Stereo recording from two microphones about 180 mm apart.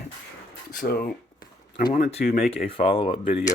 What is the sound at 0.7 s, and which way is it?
Speech, 65° left (ahead or behind).